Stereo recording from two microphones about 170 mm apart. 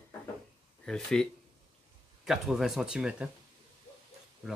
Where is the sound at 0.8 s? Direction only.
5° left (ahead or behind).